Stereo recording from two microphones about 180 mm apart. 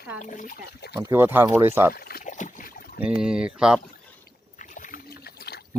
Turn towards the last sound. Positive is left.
turn(degrees=60)  # may be behind; listen again after turning